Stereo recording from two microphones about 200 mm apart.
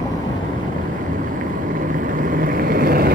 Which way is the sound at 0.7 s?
45° right (ahead or behind).